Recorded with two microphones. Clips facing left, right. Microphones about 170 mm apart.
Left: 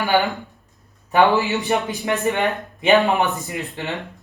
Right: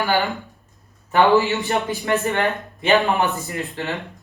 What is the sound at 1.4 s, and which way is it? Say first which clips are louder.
Speech: even; 15° left (ahead or behind).